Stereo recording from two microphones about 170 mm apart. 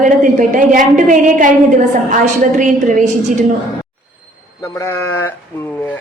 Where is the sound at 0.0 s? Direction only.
50° right (ahead or behind).